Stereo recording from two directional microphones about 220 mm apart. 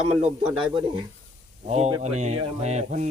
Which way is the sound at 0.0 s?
30° right (ahead or behind).